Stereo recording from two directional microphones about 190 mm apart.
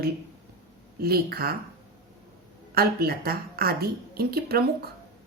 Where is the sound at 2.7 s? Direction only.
55° right (ahead or behind).